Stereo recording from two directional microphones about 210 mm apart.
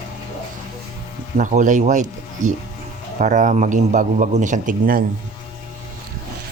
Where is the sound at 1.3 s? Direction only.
35° right (ahead or behind).